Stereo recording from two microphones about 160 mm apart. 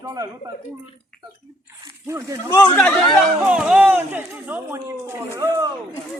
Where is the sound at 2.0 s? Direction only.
20° right (ahead or behind).